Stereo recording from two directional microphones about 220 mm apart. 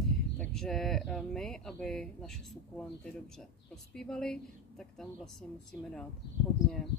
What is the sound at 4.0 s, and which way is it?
Speech, 5° left (ahead or behind).